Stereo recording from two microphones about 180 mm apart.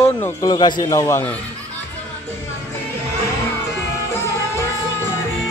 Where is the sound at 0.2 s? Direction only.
20° left (ahead or behind).